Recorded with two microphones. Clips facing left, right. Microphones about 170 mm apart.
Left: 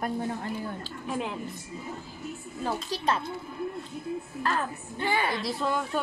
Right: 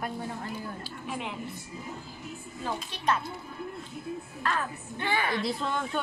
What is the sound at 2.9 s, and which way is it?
Speech, 30° left (ahead or behind).